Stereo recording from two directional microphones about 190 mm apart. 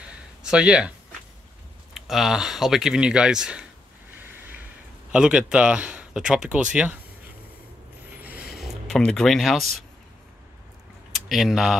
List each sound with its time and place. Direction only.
0.4 s speech: 5° right (ahead or behind)
2.0 s speech: centre (ahead or behind)
4.2 s a sound: 10° right (ahead or behind)
5.1 s speech: 5° right (ahead or behind)
8.5 s speech: centre (ahead or behind)
11.1 s speech: centre (ahead or behind)